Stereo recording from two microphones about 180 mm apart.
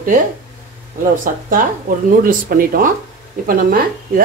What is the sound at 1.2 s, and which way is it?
A woman's voice, 50° right (ahead or behind).